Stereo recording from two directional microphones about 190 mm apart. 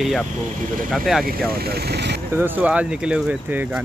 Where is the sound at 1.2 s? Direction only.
55° right (ahead or behind).